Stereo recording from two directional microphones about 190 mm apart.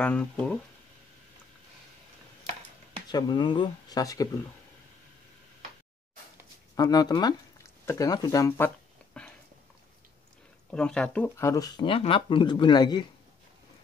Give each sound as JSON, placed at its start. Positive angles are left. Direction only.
{"t": 0.0, "sound": "speech", "side_deg": 5}
{"t": 3.1, "sound": "speech", "side_deg": 20}
{"t": 6.7, "sound": "speech", "side_deg": 20}
{"t": 10.7, "sound": "speech", "side_deg": 5}